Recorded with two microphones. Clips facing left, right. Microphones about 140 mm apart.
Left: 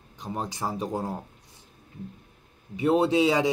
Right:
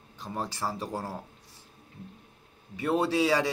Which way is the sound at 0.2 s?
20° left (ahead or behind).